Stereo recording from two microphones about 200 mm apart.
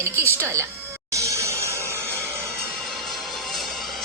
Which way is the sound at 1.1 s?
15° right (ahead or behind).